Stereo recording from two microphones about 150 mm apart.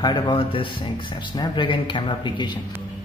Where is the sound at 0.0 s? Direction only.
30° left (ahead or behind).